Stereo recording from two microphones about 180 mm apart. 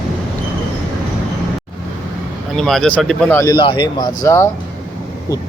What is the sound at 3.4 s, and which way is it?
Speech, 25° left (ahead or behind).